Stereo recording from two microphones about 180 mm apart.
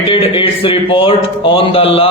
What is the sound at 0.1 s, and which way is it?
A man's voice, 30° left (ahead or behind).